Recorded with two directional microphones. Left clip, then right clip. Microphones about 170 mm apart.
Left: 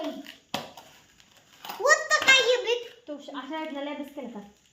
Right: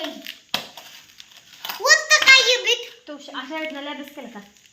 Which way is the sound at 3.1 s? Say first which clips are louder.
Right 4 dB; 15° right (ahead or behind).